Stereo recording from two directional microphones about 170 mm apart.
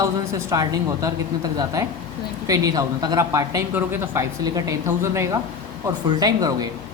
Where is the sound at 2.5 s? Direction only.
20° right (ahead or behind).